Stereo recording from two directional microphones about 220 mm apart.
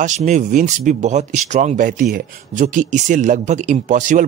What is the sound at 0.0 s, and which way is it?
Speech, 35° right (ahead or behind).